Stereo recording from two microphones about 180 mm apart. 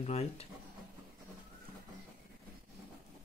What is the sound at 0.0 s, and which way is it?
Speech, 35° left (ahead or behind).